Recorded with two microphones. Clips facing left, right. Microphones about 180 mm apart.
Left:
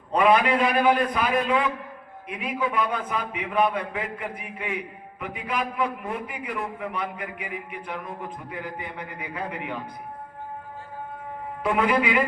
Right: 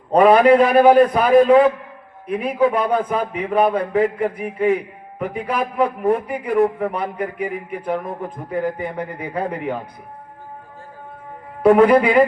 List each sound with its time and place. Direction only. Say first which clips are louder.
0.1 s a man's voice: right 9 dB; 45° right (ahead or behind)
11.6 s a man's voice: right 11 dB; 45° right (ahead or behind)